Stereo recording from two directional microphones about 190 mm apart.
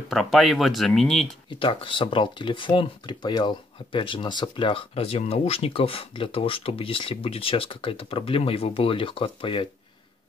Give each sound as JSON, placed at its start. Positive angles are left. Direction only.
{"t": 0.1, "sound": "speech", "side_deg": 0}
{"t": 1.6, "sound": "speech", "side_deg": 25}